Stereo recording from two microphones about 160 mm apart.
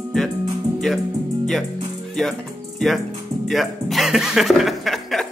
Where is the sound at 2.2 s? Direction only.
5° left (ahead or behind).